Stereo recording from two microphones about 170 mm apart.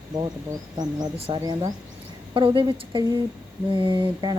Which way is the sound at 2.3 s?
30° right (ahead or behind).